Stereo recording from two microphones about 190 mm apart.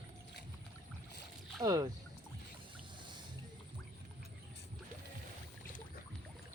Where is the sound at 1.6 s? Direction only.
20° right (ahead or behind).